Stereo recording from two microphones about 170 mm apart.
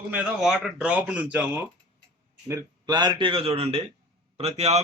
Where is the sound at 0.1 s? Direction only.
5° right (ahead or behind).